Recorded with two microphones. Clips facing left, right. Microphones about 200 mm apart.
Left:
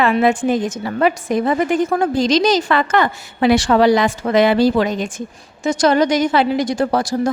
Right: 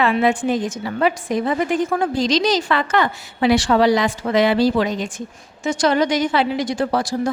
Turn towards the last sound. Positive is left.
turn(degrees=45)  # may be behind; listen again after turning